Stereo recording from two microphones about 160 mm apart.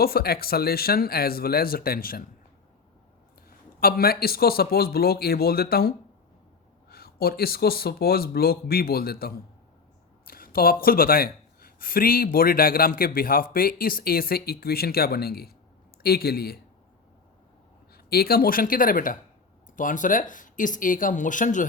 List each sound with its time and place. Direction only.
0.0 s speech: 70° left (ahead or behind)
3.8 s speech: 70° left (ahead or behind)
6.9 s speech: 70° left (ahead or behind)
17.9 s speech: 75° left (ahead or behind); by 21.7 s 55° left (ahead or behind)